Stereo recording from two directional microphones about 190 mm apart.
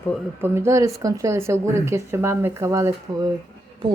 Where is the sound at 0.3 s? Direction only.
10° right (ahead or behind).